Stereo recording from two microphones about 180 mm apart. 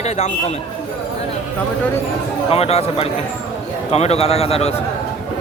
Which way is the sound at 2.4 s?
35° left (ahead or behind).